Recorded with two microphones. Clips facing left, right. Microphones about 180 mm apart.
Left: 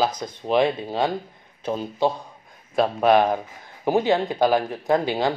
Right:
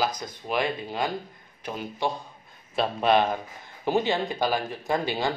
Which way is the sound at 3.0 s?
15° left (ahead or behind).